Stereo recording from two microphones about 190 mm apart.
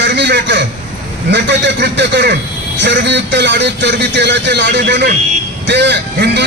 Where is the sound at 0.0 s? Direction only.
65° right (ahead or behind).